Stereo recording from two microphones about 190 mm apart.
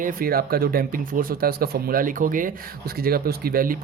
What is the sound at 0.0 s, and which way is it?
Speech, 50° right (ahead or behind).